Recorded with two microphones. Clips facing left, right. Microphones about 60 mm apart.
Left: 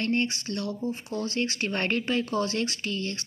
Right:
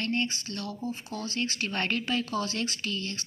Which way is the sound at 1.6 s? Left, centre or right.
Left.